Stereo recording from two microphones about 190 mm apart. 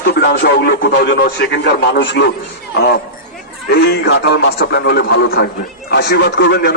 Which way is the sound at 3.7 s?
60° left (ahead or behind).